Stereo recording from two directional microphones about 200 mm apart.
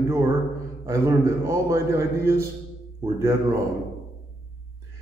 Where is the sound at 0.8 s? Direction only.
15° right (ahead or behind).